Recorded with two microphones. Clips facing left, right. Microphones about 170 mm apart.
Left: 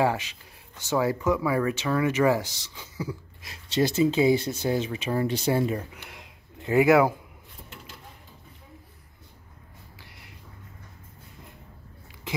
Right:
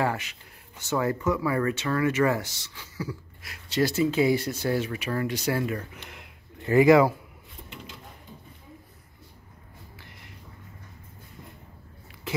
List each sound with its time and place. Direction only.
0.0 s speech: 15° left (ahead or behind)
5.9 s a sound: 15° left (ahead or behind)
6.7 s speech: 10° left (ahead or behind)